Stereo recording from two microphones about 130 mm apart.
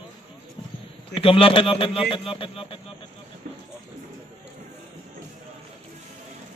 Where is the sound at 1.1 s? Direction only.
45° left (ahead or behind).